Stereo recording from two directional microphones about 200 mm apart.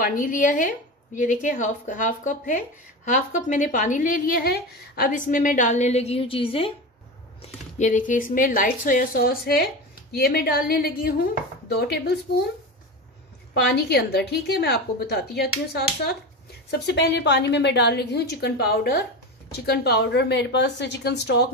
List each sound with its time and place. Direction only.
0.0 s a woman's voice: 40° left (ahead or behind)
7.4 s a woman's voice: 40° left (ahead or behind); by 12.2 s 55° left (ahead or behind)
13.6 s a woman's voice: 55° left (ahead or behind)